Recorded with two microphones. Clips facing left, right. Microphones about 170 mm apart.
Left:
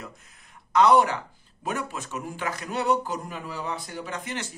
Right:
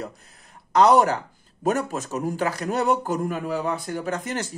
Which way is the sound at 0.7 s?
40° right (ahead or behind).